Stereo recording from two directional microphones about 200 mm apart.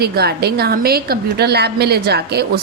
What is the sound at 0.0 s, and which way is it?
A woman's voice, 50° right (ahead or behind).